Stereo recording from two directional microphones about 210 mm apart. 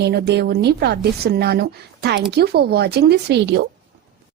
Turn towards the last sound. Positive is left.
turn(degrees=-55)  # may be behind; listen again after turning